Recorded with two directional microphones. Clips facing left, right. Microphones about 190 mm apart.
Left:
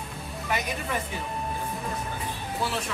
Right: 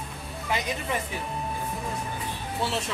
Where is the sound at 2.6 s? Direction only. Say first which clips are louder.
Right 1 dB; 25° right (ahead or behind).